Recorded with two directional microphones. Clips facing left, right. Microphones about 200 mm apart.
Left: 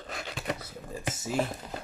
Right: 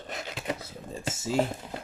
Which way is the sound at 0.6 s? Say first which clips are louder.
Right 1 dB; 25° right (ahead or behind).